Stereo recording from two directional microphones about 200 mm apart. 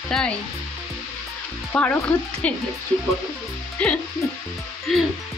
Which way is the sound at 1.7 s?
10° left (ahead or behind).